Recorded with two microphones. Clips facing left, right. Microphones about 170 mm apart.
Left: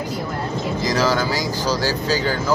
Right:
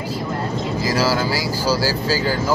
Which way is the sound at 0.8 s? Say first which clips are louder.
Even; 10° right (ahead or behind).